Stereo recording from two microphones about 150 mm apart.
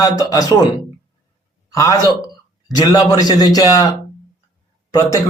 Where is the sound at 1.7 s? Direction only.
20° left (ahead or behind).